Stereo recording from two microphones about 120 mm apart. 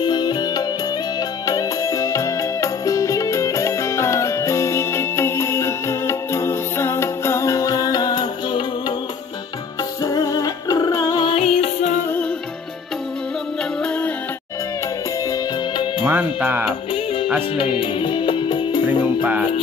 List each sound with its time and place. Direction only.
0.0 s music: 35° left (ahead or behind)
10.0 s music: 30° left (ahead or behind)
11.2 s music: 60° left (ahead or behind)
16.0 s music: 10° right (ahead or behind)
16.9 s music: 50° left (ahead or behind)